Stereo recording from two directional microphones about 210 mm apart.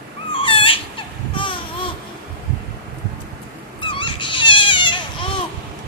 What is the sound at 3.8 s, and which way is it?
Dog, 25° left (ahead or behind).